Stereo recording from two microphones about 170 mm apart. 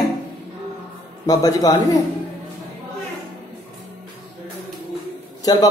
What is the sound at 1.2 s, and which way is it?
Speech, 20° left (ahead or behind).